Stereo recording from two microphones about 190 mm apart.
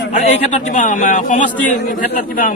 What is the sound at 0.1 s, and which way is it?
A man's voice, 40° left (ahead or behind).